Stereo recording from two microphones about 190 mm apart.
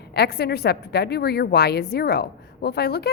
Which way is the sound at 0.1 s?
60° left (ahead or behind).